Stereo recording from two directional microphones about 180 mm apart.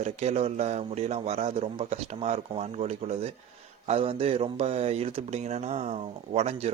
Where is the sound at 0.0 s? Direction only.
35° right (ahead or behind).